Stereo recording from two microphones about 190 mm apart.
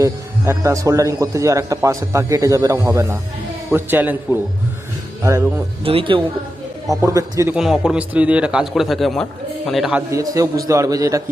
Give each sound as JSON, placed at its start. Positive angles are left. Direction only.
{"t": 0.0, "sound": "a man's voice", "side_deg": -15}
{"t": 5.8, "sound": "speech", "side_deg": -30}
{"t": 6.9, "sound": "a man's voice", "side_deg": -15}
{"t": 7.5, "sound": "a man's voice", "side_deg": -5}
{"t": 10.1, "sound": "a man's voice", "side_deg": -15}